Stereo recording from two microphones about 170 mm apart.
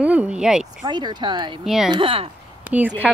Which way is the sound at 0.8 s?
25° right (ahead or behind).